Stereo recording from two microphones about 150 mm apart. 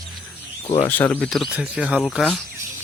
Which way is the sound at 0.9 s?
10° left (ahead or behind).